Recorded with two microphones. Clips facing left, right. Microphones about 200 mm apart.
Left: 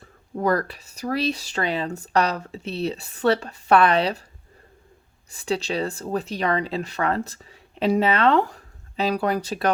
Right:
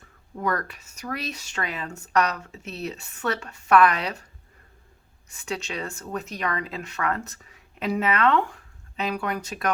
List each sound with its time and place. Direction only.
0.0 s speech: 35° left (ahead or behind)
5.3 s speech: 35° left (ahead or behind)